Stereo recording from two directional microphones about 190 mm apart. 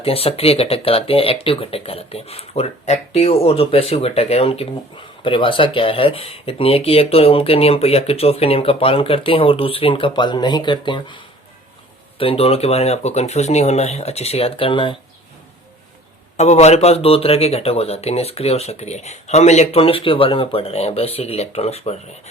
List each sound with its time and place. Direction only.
0.0 s speech: 30° left (ahead or behind)
16.4 s speech: 35° left (ahead or behind)